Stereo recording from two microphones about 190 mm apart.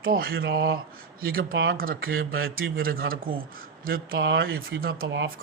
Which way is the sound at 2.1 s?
90° right.